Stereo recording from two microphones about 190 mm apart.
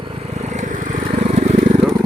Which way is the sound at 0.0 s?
30° right (ahead or behind).